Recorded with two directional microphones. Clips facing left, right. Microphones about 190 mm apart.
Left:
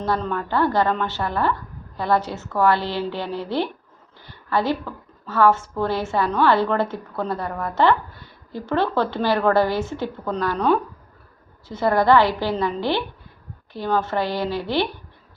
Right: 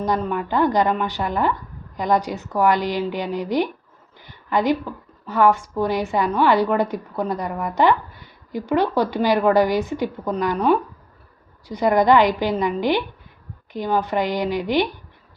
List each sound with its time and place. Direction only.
0.0 s a woman's voice: 15° right (ahead or behind)